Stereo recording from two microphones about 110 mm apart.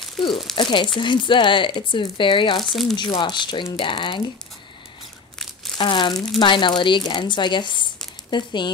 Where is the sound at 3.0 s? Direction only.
45° left (ahead or behind).